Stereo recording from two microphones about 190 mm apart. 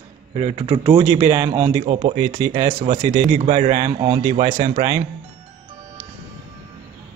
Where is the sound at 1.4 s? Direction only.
35° right (ahead or behind).